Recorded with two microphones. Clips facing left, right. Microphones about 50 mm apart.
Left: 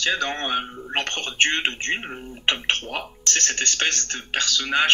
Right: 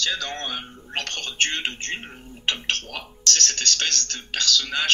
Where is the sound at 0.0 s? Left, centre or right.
Left.